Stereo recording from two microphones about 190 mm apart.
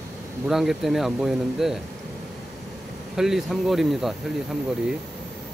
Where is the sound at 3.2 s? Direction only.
Centre (ahead or behind).